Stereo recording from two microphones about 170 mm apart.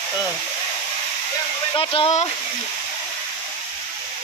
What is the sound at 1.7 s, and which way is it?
Speech, 35° left (ahead or behind).